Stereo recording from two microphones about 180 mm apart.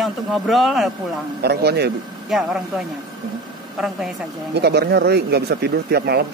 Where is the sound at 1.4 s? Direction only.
65° right (ahead or behind).